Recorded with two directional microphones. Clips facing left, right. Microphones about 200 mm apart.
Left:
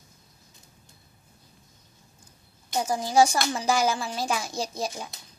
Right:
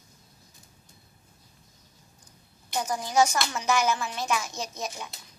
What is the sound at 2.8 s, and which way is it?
Speech, 30° left (ahead or behind).